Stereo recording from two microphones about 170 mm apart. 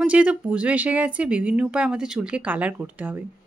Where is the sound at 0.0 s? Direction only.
10° right (ahead or behind).